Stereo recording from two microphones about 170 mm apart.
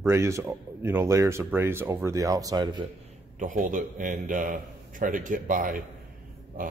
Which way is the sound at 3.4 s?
50° right (ahead or behind).